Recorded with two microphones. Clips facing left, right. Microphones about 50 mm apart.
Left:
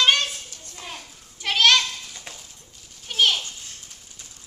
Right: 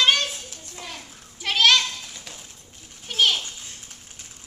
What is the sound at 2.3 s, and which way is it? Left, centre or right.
Bird, left.